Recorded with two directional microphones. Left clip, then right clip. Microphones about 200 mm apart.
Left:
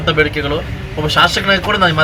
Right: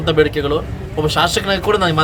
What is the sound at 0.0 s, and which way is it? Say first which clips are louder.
Speech: even; 55° right (ahead or behind).